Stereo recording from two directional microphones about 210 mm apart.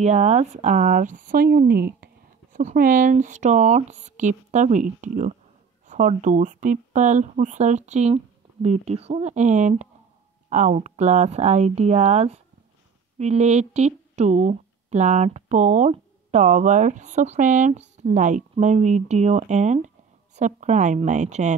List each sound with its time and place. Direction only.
0.0 s speech: 30° right (ahead or behind)